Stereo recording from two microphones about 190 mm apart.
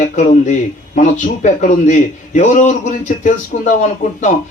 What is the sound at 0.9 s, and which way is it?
A man's voice, 40° left (ahead or behind).